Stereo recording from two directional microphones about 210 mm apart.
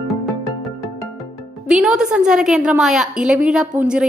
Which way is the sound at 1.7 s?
5° right (ahead or behind).